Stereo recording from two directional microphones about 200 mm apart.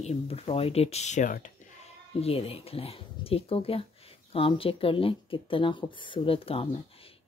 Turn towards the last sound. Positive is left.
turn(degrees=30)  # may be behind; listen again after turning